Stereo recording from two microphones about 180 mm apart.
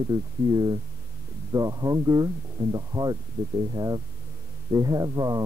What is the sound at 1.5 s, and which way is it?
Speech, 20° right (ahead or behind).